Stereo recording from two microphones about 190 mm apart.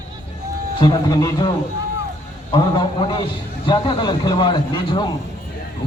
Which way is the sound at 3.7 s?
25° left (ahead or behind).